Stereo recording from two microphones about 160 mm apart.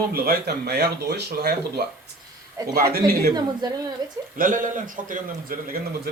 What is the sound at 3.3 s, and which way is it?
Speech, 25° right (ahead or behind).